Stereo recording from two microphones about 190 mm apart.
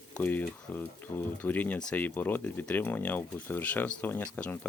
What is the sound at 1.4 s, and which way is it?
Speech, 10° left (ahead or behind).